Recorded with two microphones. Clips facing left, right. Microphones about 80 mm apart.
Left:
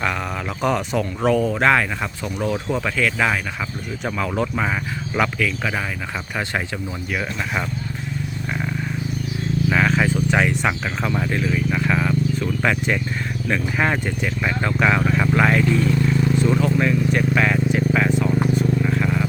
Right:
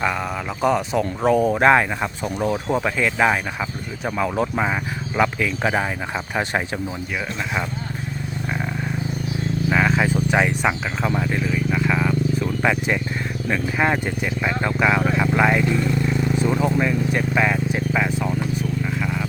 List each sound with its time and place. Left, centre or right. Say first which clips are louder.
0.9 s speech: right 1 dB; centre
1.3 s speech: right 2 dB; right
4.0 s speech: right 1 dB; centre
5.4 s speech: right 2 dB; right
9.6 s a sound: even; centre
11.2 s vehicle: left 1 dB; centre
12.6 s speech: even; centre
16.7 s vehicle: left 1 dB; centre